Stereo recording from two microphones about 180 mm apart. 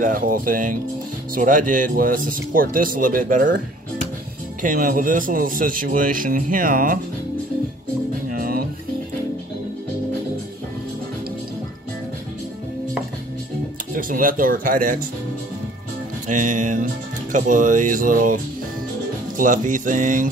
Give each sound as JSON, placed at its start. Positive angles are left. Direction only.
{"t": 0.0, "sound": "speech", "side_deg": -50}
{"t": 8.3, "sound": "music", "side_deg": -55}
{"t": 13.9, "sound": "speech", "side_deg": -50}
{"t": 16.3, "sound": "speech", "side_deg": -45}